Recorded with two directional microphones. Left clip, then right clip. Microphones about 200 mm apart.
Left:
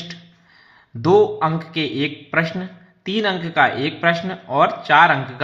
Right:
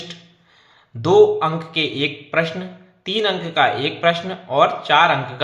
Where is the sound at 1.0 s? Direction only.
25° left (ahead or behind).